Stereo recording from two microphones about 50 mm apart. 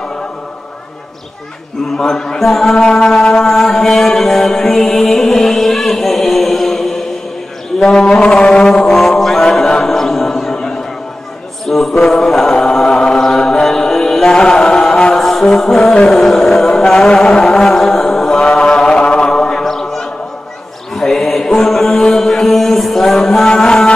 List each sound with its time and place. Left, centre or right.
2.0 s mantra: centre
7.8 s a sound: centre
8.3 s music: centre
8.9 s chant: centre
11.6 s a sound: centre
12.0 s mantra: centre
12.5 s music: centre
18.6 s chant: centre
20.9 s mantra: centre
23.4 s music: centre